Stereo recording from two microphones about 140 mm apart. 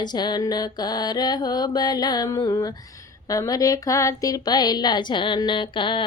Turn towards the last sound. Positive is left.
turn(degrees=35)  # may be behind; listen again after turning